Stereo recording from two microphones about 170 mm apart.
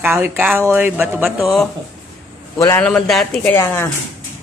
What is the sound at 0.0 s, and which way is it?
Speech, 10° right (ahead or behind).